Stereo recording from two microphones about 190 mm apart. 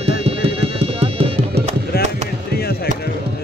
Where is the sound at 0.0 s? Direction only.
30° right (ahead or behind).